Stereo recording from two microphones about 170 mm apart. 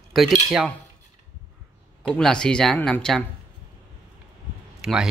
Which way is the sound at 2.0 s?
5° left (ahead or behind).